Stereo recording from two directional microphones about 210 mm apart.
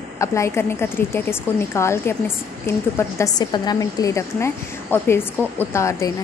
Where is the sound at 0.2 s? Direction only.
15° left (ahead or behind).